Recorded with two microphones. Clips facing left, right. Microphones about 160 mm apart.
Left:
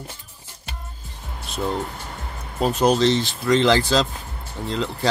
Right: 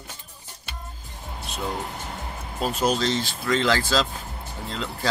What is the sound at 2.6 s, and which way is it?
Speech, 20° left (ahead or behind).